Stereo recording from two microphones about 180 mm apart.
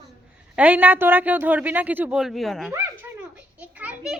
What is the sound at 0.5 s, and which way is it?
A man's voice, 10° right (ahead or behind).